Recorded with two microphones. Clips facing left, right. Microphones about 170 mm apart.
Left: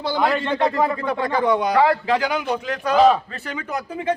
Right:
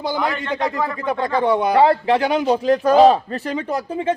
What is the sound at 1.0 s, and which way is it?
A man's voice, 25° right (ahead or behind).